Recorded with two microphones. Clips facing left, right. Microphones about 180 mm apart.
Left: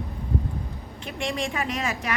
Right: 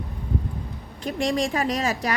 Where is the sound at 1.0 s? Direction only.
40° right (ahead or behind).